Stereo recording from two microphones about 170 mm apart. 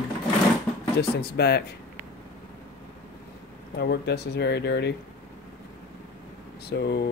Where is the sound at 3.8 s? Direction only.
80° left.